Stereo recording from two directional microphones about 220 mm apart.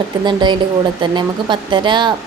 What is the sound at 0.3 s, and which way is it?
A woman's voice, 20° right (ahead or behind).